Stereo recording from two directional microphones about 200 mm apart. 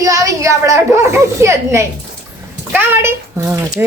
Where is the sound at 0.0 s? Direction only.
15° right (ahead or behind).